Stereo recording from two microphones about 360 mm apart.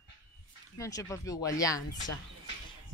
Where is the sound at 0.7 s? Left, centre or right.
Centre.